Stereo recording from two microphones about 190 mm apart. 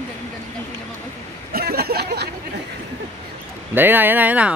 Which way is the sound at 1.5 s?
55° right (ahead or behind).